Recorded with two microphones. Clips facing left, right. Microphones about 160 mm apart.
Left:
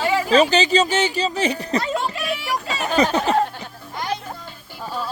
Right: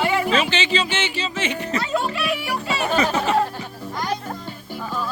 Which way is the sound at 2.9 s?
35° left (ahead or behind).